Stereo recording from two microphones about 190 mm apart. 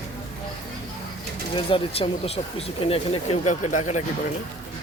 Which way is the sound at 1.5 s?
30° left (ahead or behind).